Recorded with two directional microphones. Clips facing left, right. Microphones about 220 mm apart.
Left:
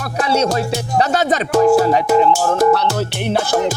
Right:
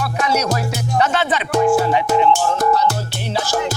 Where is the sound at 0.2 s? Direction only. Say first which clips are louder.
Left 3 dB; 30° left (ahead or behind).